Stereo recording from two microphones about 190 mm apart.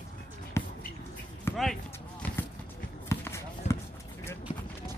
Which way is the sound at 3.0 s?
15° left (ahead or behind).